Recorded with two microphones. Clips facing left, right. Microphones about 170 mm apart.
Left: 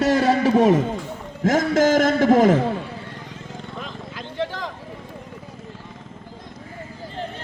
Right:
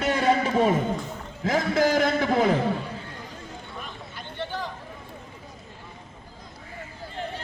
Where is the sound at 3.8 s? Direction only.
90° left.